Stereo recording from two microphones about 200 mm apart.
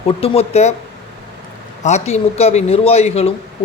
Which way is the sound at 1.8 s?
35° left (ahead or behind).